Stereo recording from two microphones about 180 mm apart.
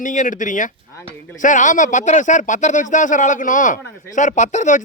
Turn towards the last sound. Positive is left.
turn(degrees=40)  # may be behind; listen again after turning